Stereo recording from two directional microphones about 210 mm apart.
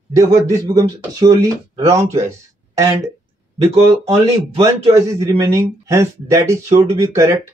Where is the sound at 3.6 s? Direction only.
30° right (ahead or behind).